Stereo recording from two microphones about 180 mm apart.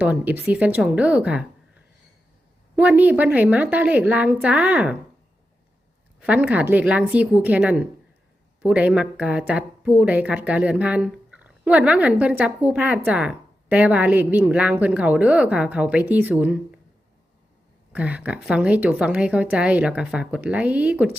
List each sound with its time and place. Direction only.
0.0 s a woman's voice: 10° right (ahead or behind)
6.1 s a woman's voice: 5° right (ahead or behind)
17.9 s a woman's voice: 5° right (ahead or behind)